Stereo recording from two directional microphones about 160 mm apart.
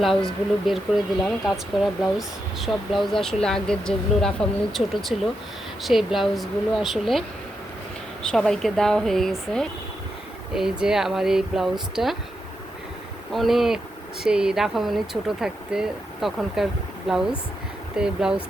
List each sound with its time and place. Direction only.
0.0 s speech: centre (ahead or behind)
13.3 s speech: centre (ahead or behind)